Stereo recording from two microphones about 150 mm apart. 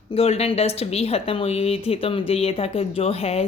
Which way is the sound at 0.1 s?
45° left (ahead or behind).